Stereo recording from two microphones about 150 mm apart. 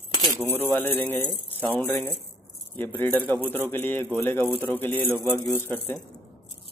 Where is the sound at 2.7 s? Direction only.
15° left (ahead or behind).